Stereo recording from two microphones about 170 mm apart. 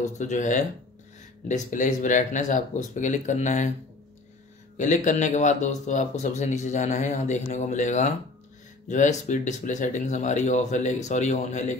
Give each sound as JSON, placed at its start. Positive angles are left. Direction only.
{"t": 0.0, "sound": "speech", "side_deg": 45}
{"t": 4.7, "sound": "speech", "side_deg": 45}